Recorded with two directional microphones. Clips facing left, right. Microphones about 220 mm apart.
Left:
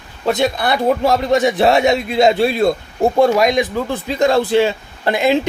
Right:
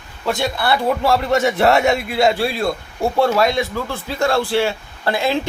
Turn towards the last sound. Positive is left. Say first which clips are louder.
# left 4 dB
turn(degrees=20)  # may be behind; listen again after turning